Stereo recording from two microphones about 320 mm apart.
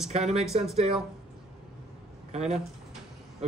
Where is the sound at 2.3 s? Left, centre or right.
Centre.